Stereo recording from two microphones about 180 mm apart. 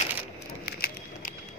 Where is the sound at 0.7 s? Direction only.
60° left (ahead or behind).